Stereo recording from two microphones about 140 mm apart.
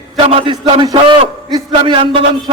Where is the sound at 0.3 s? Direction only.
40° right (ahead or behind).